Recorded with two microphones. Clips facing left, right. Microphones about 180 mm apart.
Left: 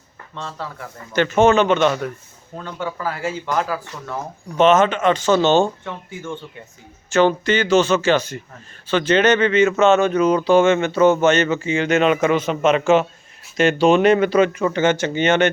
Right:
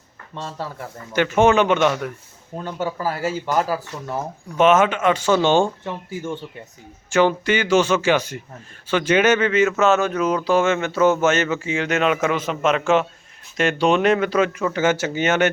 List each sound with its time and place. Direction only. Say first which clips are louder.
0.3 s speech: right 1 dB; 40° right (ahead or behind)
1.1 s speech: left 1 dB; 10° right (ahead or behind)
2.7 s speech: right 1 dB; 40° right (ahead or behind)
4.5 s speech: left 1 dB; 10° right (ahead or behind)
7.1 s speech: left 1 dB; 10° right (ahead or behind)